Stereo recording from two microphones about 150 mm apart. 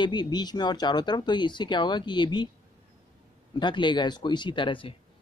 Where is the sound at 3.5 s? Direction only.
30° left (ahead or behind).